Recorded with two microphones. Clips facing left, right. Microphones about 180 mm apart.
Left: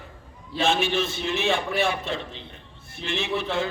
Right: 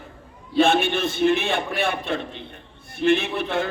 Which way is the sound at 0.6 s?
60° right (ahead or behind).